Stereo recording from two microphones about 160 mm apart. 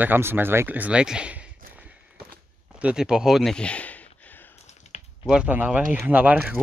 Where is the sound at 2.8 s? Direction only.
5° right (ahead or behind).